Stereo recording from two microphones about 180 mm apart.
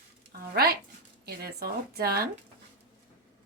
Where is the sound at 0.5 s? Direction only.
60° right (ahead or behind).